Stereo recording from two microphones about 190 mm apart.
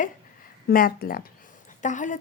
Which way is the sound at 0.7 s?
50° left (ahead or behind).